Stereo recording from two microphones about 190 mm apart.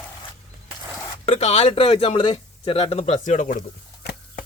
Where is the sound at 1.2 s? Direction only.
35° left (ahead or behind).